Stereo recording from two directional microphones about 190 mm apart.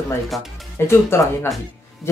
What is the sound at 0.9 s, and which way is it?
Speech, 15° left (ahead or behind).